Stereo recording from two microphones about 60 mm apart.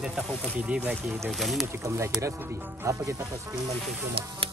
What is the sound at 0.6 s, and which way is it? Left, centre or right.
Speech, right.